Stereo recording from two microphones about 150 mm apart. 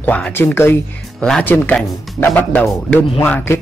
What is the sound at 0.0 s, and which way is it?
Speech, 10° left (ahead or behind).